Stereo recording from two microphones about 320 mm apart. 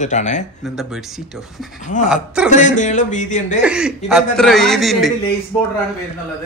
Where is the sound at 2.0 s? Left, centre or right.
Centre.